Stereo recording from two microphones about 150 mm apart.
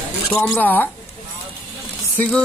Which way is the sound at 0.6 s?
10° left (ahead or behind).